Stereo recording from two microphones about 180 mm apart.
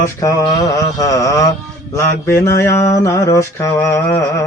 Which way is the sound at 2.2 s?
15° left (ahead or behind).